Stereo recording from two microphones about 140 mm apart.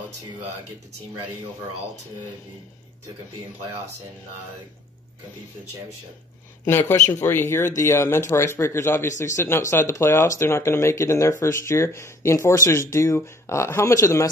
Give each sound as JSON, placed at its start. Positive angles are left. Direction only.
{"t": 6.9, "sound": "speech", "side_deg": 20}